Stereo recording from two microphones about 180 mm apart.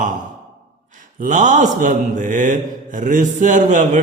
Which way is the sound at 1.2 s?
45° right (ahead or behind).